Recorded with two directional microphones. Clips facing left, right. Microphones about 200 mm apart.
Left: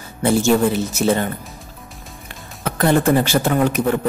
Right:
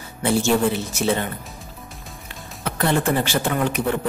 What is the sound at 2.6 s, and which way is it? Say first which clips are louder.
Speech: left 5 dB; 45° left (ahead or behind).